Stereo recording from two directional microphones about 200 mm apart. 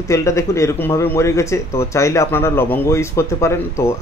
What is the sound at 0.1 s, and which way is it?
Speech, 15° left (ahead or behind).